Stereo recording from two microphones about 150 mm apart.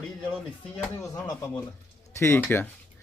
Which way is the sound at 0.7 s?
15° left (ahead or behind).